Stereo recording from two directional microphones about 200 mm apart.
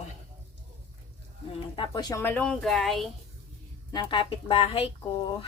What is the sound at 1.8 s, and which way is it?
Speech, 20° left (ahead or behind).